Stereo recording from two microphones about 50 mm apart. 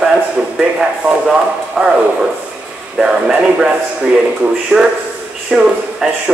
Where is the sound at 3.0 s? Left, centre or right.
Centre.